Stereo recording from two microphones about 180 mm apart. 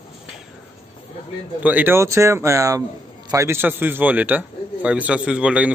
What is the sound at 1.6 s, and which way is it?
A man's voice, 10° right (ahead or behind).